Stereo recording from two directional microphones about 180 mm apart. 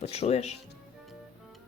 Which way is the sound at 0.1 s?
35° left (ahead or behind).